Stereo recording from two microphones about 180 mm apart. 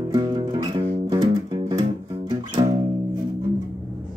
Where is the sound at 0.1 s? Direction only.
25° right (ahead or behind).